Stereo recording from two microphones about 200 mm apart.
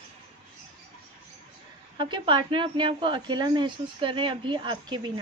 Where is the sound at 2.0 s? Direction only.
25° right (ahead or behind).